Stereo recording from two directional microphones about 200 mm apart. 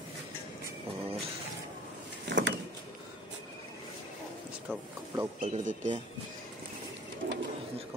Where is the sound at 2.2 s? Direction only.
60° right (ahead or behind).